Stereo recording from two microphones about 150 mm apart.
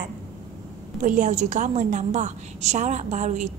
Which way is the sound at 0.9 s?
60° right (ahead or behind).